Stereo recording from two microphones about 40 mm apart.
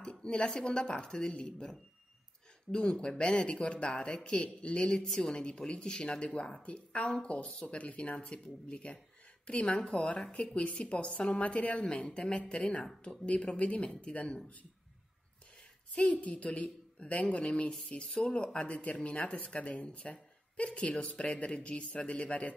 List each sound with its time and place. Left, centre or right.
0.0 s a woman's voice: left
5.0 s a woman's voice: centre
5.3 s a woman's voice: left
10.0 s a woman's voice: left
16.0 s a woman's voice: left